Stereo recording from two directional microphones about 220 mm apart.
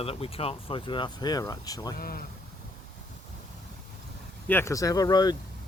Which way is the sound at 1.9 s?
40° left (ahead or behind).